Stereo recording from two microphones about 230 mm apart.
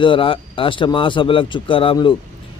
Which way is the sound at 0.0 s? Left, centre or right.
Left.